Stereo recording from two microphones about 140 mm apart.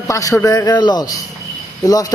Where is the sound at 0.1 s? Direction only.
25° left (ahead or behind).